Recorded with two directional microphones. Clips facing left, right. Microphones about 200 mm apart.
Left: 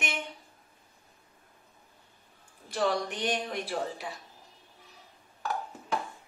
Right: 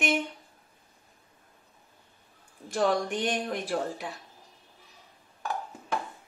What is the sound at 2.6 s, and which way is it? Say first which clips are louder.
Speech: right 3 dB; 50° right (ahead or behind).